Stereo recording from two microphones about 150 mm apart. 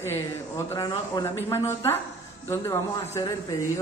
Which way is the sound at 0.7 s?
25° left (ahead or behind).